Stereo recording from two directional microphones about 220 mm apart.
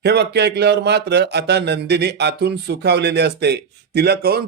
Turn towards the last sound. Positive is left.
turn(degrees=-45)  # may be behind; listen again after turning